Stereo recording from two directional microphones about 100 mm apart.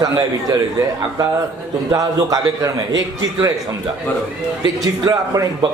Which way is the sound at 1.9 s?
35° right (ahead or behind).